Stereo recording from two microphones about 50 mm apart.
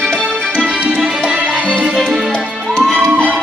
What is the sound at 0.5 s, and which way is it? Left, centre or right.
Music, right.